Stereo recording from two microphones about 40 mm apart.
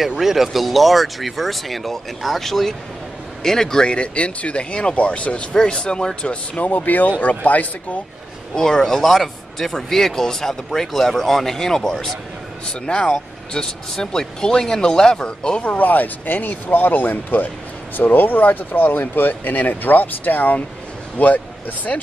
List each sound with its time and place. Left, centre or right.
0.2 s speech: centre
3.8 s speech: left
5.5 s speech: centre
6.6 s speech: left
8.5 s speech: centre
15.6 s speech: left